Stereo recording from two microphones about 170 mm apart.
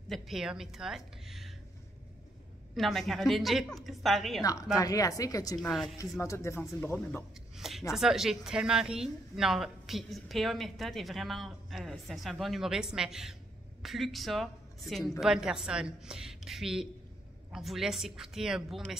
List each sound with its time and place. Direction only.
0.1 s a woman's voice: centre (ahead or behind)
2.7 s a woman's voice: centre (ahead or behind)
4.4 s speech: 20° left (ahead or behind)
5.6 s a woman's voice: centre (ahead or behind)
5.9 s speech: 15° left (ahead or behind)
7.5 s a sound: centre (ahead or behind)
7.9 s a woman's voice: centre (ahead or behind)